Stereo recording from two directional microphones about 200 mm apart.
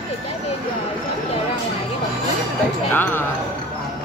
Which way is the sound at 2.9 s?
10° left (ahead or behind).